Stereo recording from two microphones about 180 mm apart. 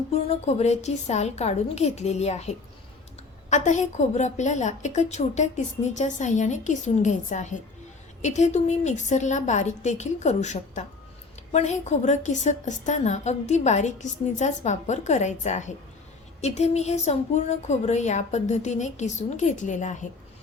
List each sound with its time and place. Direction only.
0.1 s a woman's voice: 35° left (ahead or behind)